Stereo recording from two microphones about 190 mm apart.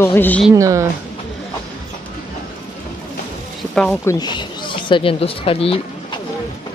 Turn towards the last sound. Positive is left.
turn(degrees=30)  # may be behind; listen again after turning